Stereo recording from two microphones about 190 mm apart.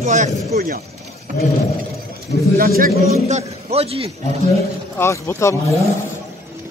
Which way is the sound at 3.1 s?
35° right (ahead or behind).